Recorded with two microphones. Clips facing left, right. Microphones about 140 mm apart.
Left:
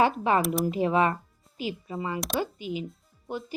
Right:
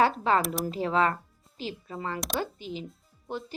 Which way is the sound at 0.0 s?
15° left (ahead or behind).